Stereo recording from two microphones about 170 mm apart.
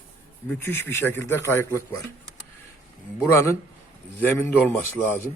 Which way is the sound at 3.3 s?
15° left (ahead or behind).